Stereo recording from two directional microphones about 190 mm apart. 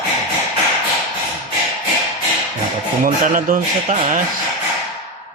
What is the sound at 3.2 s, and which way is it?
Speech, 45° right (ahead or behind).